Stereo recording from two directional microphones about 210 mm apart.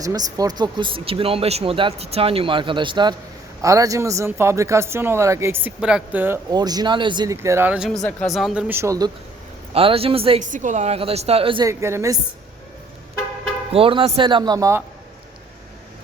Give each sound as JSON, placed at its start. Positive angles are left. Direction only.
{"t": 0.0, "sound": "speech", "side_deg": -15}
{"t": 9.7, "sound": "speech", "side_deg": -25}
{"t": 13.7, "sound": "speech", "side_deg": -25}